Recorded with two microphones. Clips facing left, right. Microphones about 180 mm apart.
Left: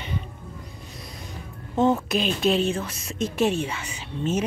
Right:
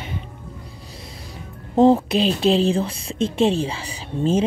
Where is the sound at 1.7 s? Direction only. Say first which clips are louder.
Right 6 dB; 30° right (ahead or behind).